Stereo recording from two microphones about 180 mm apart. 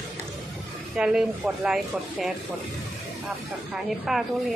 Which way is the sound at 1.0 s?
5° right (ahead or behind).